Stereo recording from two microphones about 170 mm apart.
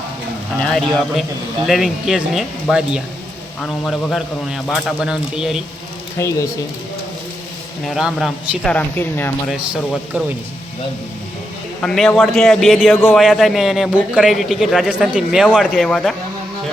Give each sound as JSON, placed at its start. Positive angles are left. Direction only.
{"t": 0.6, "sound": "a man's voice", "side_deg": 0}
{"t": 6.1, "sound": "speech", "side_deg": 20}
{"t": 7.9, "sound": "speech", "side_deg": 0}
{"t": 9.5, "sound": "a man's voice", "side_deg": -5}
{"t": 11.8, "sound": "a man's voice", "side_deg": 5}